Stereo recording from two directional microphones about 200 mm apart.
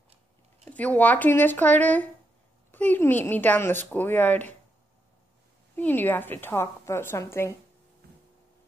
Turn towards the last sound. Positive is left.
turn(degrees=15)  # may be behind; listen again after turning